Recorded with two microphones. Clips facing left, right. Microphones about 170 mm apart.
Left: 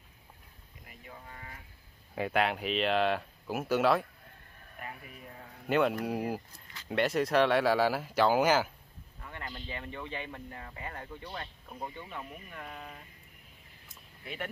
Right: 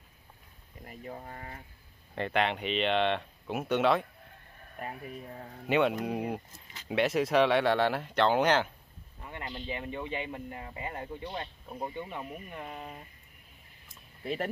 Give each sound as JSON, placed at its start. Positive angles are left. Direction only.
{"t": 0.8, "sound": "speech", "side_deg": -40}
{"t": 2.1, "sound": "speech", "side_deg": 5}
{"t": 5.7, "sound": "speech", "side_deg": 0}
{"t": 9.2, "sound": "speech", "side_deg": -20}
{"t": 14.2, "sound": "speech", "side_deg": -35}